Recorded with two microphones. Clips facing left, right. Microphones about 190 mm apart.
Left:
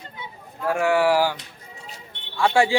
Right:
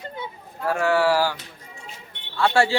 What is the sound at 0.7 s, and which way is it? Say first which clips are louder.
A man's voice: left 1 dB; 15° left (ahead or behind).